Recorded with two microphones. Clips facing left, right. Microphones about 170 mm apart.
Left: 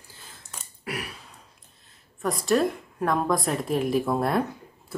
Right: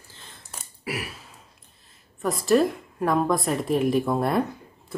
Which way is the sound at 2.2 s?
Centre (ahead or behind).